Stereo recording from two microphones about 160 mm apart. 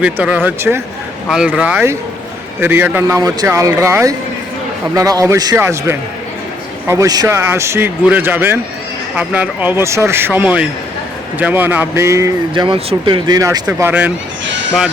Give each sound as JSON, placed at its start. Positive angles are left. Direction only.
{"t": 0.0, "sound": "a man's voice", "side_deg": -10}
{"t": 12.6, "sound": "speech", "side_deg": -35}
{"t": 13.7, "sound": "a man's voice", "side_deg": -10}